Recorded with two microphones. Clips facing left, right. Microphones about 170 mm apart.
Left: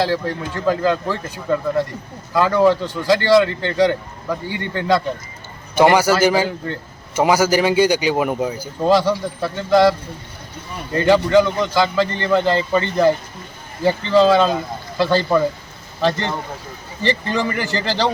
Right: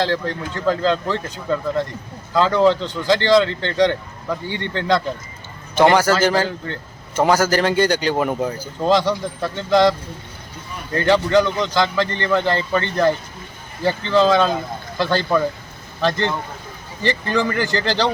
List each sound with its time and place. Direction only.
0.0 s speech: 5° left (ahead or behind)
10.9 s speech: 10° left (ahead or behind)